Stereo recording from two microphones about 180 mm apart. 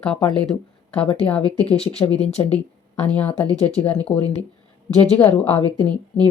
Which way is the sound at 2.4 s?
20° left (ahead or behind).